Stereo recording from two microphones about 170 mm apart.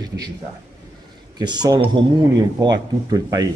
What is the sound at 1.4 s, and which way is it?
Speech, 25° right (ahead or behind).